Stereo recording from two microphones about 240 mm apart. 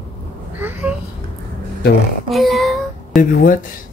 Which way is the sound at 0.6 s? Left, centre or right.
Centre.